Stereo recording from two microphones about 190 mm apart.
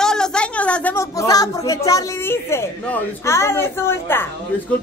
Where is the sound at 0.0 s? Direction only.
5° left (ahead or behind); by 1.8 s 20° left (ahead or behind).